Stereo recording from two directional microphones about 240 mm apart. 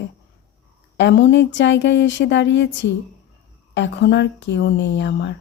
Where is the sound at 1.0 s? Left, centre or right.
Left.